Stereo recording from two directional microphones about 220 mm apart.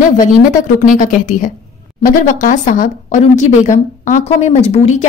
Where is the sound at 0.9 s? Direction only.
35° left (ahead or behind).